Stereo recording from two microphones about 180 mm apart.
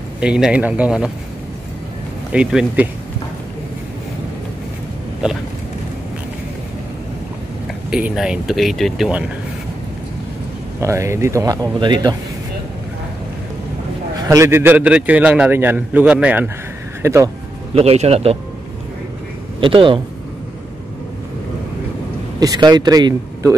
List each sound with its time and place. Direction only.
0.2 s speech: 5° right (ahead or behind)
2.3 s a man's voice: 5° right (ahead or behind)
7.9 s speech: 5° right (ahead or behind)
10.8 s a man's voice: 15° right (ahead or behind)
14.2 s a man's voice: 20° right (ahead or behind)
17.7 s a man's voice: 35° right (ahead or behind)
19.6 s speech: 30° right (ahead or behind)
22.4 s speech: 20° right (ahead or behind)